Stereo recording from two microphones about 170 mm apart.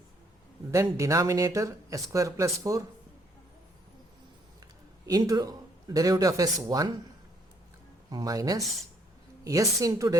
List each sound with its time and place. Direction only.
0.7 s speech: 20° right (ahead or behind)
5.0 s a man's voice: 20° right (ahead or behind)
8.1 s speech: 20° right (ahead or behind)